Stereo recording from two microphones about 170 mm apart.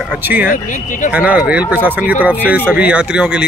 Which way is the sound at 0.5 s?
50° left (ahead or behind).